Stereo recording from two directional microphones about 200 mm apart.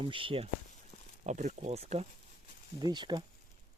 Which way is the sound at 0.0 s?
25° right (ahead or behind).